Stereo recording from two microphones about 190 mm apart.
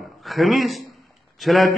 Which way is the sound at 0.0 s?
Centre (ahead or behind).